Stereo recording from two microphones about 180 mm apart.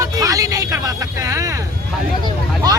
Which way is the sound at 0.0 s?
20° right (ahead or behind).